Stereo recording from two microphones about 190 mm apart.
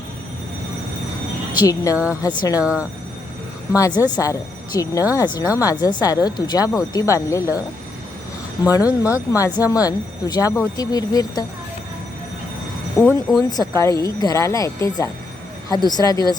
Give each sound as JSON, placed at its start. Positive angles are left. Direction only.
{"t": 1.5, "sound": "speech", "side_deg": 20}
{"t": 2.6, "sound": "speech", "side_deg": -5}
{"t": 3.8, "sound": "speech", "side_deg": 20}
{"t": 8.6, "sound": "speech", "side_deg": 15}
{"t": 9.6, "sound": "a woman's voice", "side_deg": -10}
{"t": 9.8, "sound": "speech", "side_deg": 20}
{"t": 13.0, "sound": "speech", "side_deg": 5}
{"t": 13.5, "sound": "speech", "side_deg": 20}